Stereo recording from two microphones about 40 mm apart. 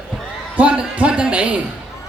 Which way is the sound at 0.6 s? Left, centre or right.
Right.